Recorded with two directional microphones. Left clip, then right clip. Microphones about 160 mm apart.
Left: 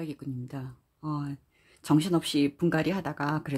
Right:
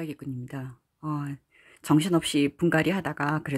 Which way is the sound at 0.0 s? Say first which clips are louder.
Right 2 dB; 25° right (ahead or behind).